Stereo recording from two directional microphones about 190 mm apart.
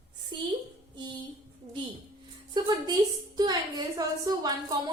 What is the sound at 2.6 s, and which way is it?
Music, 20° right (ahead or behind).